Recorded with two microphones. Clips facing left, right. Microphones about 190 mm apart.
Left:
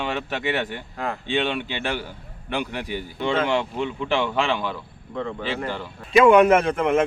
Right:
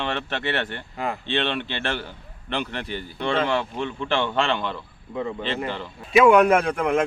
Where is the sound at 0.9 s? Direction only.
Centre (ahead or behind).